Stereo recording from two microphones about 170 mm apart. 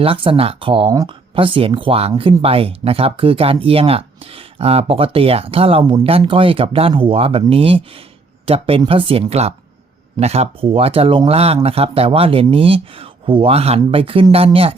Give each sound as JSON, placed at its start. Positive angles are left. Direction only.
{"t": 0.0, "sound": "speech", "side_deg": -30}